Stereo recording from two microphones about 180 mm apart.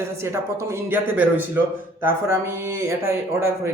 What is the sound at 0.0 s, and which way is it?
Speech, 15° right (ahead or behind).